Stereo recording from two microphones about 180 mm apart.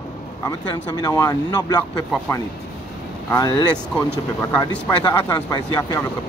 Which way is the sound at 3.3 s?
20° left (ahead or behind).